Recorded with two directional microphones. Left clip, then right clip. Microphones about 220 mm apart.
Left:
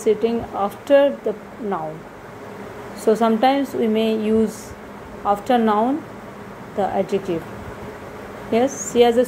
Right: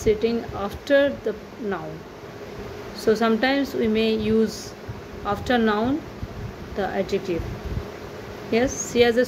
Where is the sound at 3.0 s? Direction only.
5° right (ahead or behind).